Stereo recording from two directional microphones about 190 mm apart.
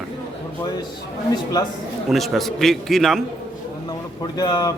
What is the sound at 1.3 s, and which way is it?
Speech, 20° left (ahead or behind).